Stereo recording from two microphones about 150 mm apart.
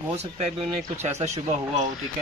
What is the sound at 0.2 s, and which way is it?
Speech, 45° right (ahead or behind).